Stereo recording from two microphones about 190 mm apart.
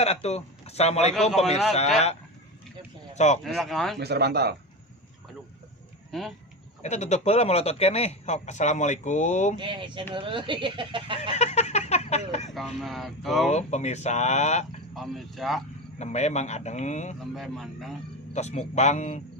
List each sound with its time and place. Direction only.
0.0 s a man's voice: 35° left (ahead or behind)
3.4 s speech: centre (ahead or behind)
4.0 s speech: 60° right (ahead or behind)
6.1 s speech: centre (ahead or behind)
6.8 s a man's voice: 35° left (ahead or behind)
9.6 s speech: 25° right (ahead or behind)
11.2 s a sound: 35° left (ahead or behind)
12.5 s speech: centre (ahead or behind)
13.5 s a man's voice: 35° left (ahead or behind)
14.9 s speech: centre (ahead or behind)
16.0 s a man's voice: 35° left (ahead or behind)
17.2 s speech: centre (ahead or behind)
18.3 s a man's voice: 35° left (ahead or behind)